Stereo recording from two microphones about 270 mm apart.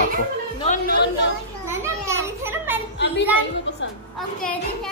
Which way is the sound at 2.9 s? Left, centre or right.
Left.